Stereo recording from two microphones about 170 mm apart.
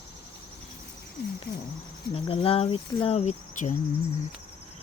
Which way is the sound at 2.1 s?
35° left (ahead or behind).